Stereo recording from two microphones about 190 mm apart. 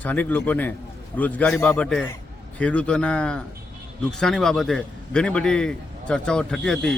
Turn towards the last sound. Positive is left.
turn(degrees=5)  # may be behind; listen again after turning